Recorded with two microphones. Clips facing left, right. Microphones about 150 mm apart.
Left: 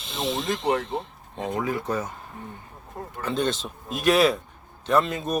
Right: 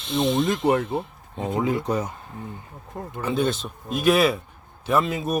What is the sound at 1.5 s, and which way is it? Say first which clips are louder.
Speech: right 4 dB; 20° right (ahead or behind).